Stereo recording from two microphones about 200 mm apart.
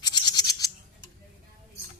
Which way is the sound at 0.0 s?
20° left (ahead or behind).